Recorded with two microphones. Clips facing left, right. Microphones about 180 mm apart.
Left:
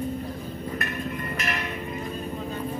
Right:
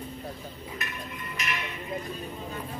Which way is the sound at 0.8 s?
55° left (ahead or behind).